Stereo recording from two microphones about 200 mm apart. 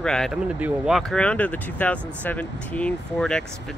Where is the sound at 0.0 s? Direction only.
Centre (ahead or behind).